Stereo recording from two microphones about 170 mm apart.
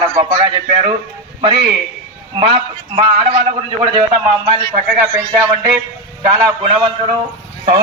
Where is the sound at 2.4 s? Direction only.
30° right (ahead or behind).